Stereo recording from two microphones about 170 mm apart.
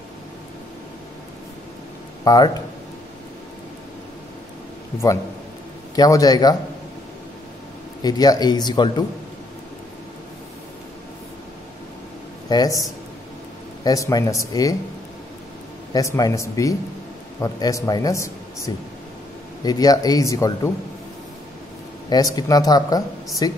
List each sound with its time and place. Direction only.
2.2 s speech: 25° left (ahead or behind)
5.9 s speech: 20° left (ahead or behind)
8.0 s speech: 25° left (ahead or behind)
12.4 s speech: 25° left (ahead or behind)
13.8 s speech: 20° left (ahead or behind)
15.9 s speech: 20° left (ahead or behind)
22.1 s speech: 20° left (ahead or behind)